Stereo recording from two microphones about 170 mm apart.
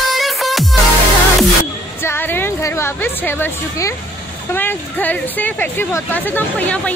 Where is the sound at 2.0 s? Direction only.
10° left (ahead or behind).